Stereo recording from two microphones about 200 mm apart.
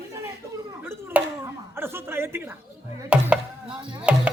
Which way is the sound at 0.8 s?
10° right (ahead or behind).